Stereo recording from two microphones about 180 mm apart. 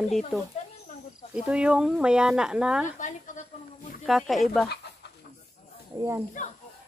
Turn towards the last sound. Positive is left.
turn(degrees=45)  # may be behind; listen again after turning